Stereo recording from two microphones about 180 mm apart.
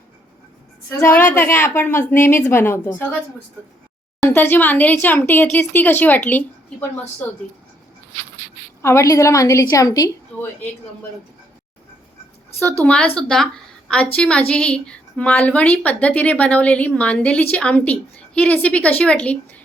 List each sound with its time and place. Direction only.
0.9 s a woman's voice: 10° left (ahead or behind)
4.3 s a woman's voice: 10° left (ahead or behind)
8.8 s a woman's voice: 15° left (ahead or behind)
12.5 s a woman's voice: 10° left (ahead or behind)